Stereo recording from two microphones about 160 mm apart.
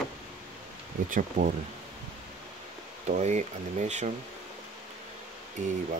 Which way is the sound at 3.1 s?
45° right (ahead or behind).